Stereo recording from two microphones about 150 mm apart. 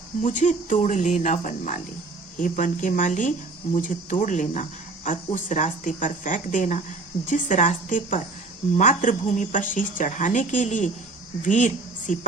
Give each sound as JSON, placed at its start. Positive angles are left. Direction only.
{"t": 0.2, "sound": "a woman's voice", "side_deg": 55}